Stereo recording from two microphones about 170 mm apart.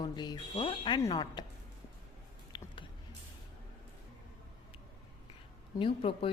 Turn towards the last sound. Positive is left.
turn(degrees=35)  # may be behind; listen again after turning